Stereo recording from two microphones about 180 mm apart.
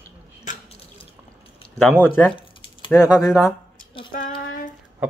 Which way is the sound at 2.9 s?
5° left (ahead or behind).